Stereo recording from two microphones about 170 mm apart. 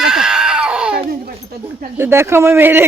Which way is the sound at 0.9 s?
60° right (ahead or behind).